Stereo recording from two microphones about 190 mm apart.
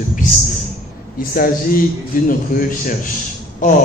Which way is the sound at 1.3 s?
50° left (ahead or behind).